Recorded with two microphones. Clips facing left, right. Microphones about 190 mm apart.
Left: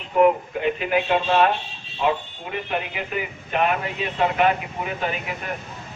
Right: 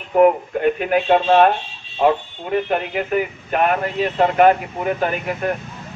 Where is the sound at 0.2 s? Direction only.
50° right (ahead or behind).